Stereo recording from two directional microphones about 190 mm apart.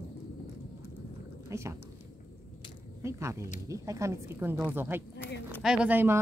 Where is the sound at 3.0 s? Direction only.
15° right (ahead or behind).